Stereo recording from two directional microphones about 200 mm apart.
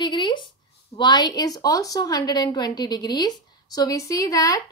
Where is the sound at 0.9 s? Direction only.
20° left (ahead or behind).